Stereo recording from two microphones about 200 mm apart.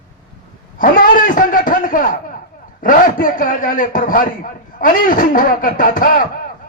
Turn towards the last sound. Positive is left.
turn(degrees=45)  # may be behind; listen again after turning